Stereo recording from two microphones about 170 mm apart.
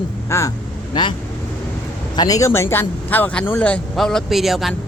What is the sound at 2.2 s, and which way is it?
A man's voice, 20° left (ahead or behind).